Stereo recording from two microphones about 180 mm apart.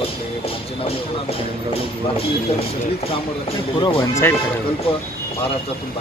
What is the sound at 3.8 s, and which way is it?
Speech, 25° left (ahead or behind).